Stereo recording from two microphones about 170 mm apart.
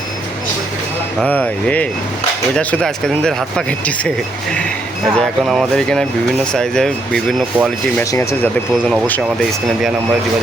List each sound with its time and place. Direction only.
1.2 s speech: 10° left (ahead or behind)
5.1 s speech: centre (ahead or behind)
8.1 s speech: 15° left (ahead or behind)